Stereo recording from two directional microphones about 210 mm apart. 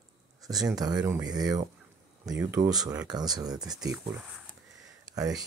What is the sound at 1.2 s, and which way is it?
Speech, 15° right (ahead or behind).